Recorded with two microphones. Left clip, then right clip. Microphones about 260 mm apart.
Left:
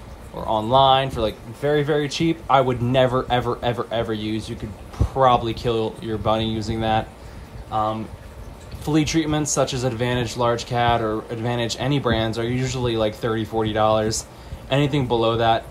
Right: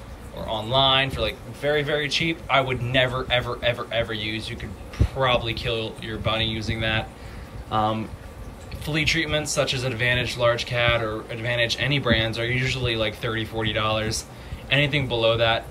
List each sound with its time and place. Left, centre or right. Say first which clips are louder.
0.5 s speech: left 5 dB; centre
8.8 s speech: left 2 dB; centre